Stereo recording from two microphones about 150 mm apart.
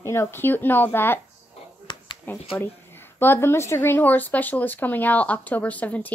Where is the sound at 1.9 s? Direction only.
30° left (ahead or behind).